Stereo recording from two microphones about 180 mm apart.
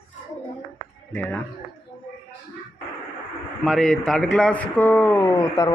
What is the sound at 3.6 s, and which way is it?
A man's voice, centre (ahead or behind).